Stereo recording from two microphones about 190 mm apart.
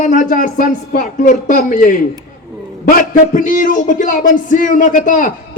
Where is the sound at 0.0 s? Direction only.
40° left (ahead or behind).